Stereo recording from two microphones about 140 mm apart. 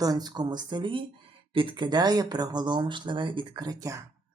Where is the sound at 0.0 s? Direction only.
30° right (ahead or behind).